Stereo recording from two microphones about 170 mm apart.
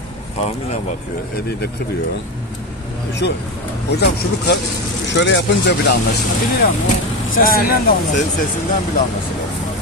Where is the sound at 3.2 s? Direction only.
90° left.